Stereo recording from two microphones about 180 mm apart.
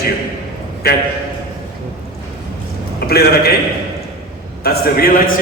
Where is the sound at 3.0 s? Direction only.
60° left (ahead or behind).